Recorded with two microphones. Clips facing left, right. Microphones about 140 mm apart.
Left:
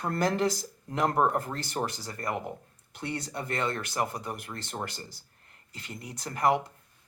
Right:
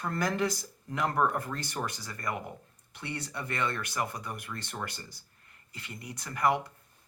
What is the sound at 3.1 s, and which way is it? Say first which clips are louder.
Speech: left 3 dB; 25° left (ahead or behind).